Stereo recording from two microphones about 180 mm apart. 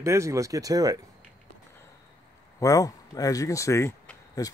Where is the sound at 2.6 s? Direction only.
20° left (ahead or behind).